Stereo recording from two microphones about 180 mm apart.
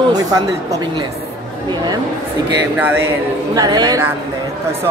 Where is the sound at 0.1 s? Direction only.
20° right (ahead or behind).